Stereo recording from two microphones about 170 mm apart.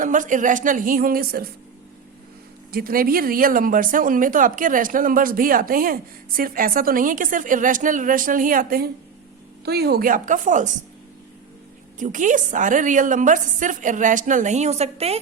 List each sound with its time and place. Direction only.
0.0 s a woman's voice: 50° right (ahead or behind)
2.7 s speech: 60° right (ahead or behind)
9.6 s a woman's voice: 70° right (ahead or behind); by 10.7 s 50° right (ahead or behind)
11.9 s a woman's voice: 50° right (ahead or behind)